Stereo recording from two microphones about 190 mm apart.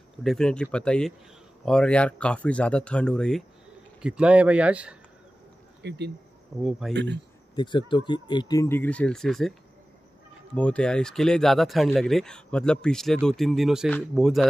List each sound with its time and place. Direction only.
0.2 s speech: centre (ahead or behind)
5.8 s speech: 65° right (ahead or behind)
7.5 s speech: 25° left (ahead or behind); by 9.5 s centre (ahead or behind)
10.5 s speech: 5° left (ahead or behind)